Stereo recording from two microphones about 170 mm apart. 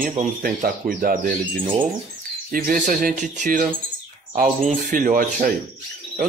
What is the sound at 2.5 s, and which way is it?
Speech, 60° right (ahead or behind).